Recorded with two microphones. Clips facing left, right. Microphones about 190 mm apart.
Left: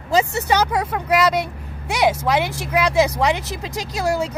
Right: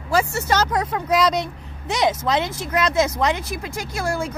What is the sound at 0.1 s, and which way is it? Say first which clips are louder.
Speech: left 2 dB; 15° left (ahead or behind).